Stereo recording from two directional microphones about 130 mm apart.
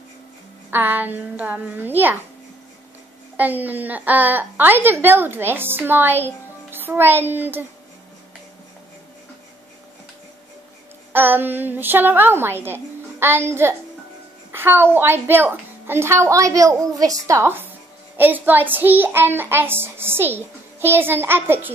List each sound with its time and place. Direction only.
0.7 s a woman's voice: 15° right (ahead or behind)
3.3 s a woman's voice: 15° right (ahead or behind)
11.1 s a woman's voice: 15° right (ahead or behind)